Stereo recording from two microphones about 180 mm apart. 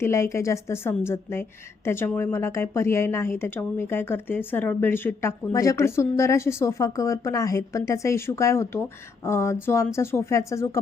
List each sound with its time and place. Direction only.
0.0 s a woman's voice: 15° left (ahead or behind)